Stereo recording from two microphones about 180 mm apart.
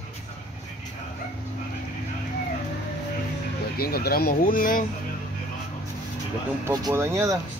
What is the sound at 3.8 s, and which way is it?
Speech, 60° left (ahead or behind).